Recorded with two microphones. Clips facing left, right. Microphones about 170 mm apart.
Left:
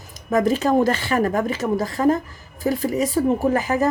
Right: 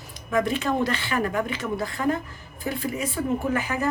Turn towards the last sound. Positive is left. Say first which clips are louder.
# left 6 dB
turn(degrees=40)  # may be behind; listen again after turning